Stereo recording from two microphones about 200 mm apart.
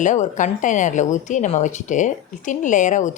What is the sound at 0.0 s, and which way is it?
Speech, 40° left (ahead or behind).